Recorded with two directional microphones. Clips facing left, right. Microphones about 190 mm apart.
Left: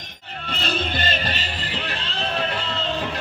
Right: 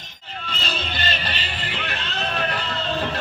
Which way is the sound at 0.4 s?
55° left (ahead or behind).